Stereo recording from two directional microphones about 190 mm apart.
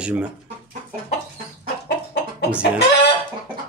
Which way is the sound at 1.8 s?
60° left (ahead or behind).